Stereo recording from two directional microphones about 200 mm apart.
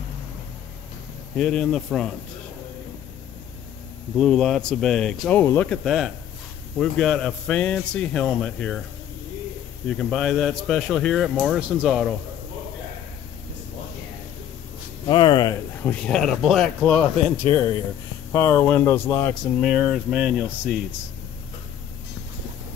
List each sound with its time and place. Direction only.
1.3 s speech: centre (ahead or behind)
4.2 s speech: centre (ahead or behind)
9.8 s speech: 5° left (ahead or behind)
15.0 s speech: 25° left (ahead or behind)
15.8 s speech: 5° left (ahead or behind)
19.6 s speech: centre (ahead or behind)